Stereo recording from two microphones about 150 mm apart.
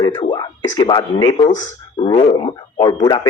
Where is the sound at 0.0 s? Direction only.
30° left (ahead or behind).